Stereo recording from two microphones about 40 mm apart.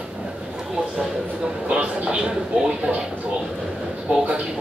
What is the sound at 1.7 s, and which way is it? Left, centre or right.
Vehicle, right.